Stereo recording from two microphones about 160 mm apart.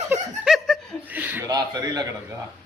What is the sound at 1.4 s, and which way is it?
Speech, 25° right (ahead or behind).